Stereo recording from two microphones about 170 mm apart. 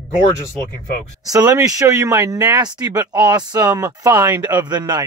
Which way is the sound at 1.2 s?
20° right (ahead or behind).